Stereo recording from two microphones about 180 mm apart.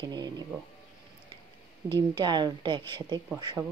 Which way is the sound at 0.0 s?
20° right (ahead or behind).